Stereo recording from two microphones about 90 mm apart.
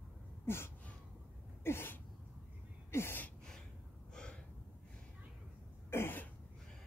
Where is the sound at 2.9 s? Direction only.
30° left (ahead or behind).